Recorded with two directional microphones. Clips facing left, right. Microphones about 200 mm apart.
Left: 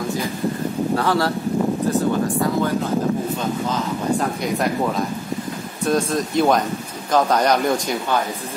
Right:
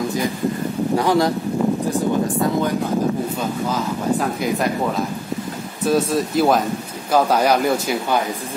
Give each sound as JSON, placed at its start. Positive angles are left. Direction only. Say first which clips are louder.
{"t": 0.9, "sound": "a man's voice", "louder": "right 4 dB", "side_deg": -15}
{"t": 4.4, "sound": "a man's voice", "louder": "right 1 dB", "side_deg": 0}